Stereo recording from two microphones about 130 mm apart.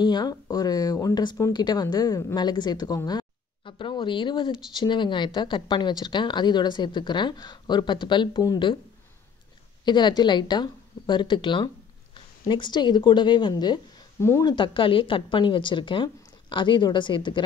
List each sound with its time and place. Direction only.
0.0 s a woman's voice: 35° left (ahead or behind)
9.8 s a woman's voice: 35° left (ahead or behind)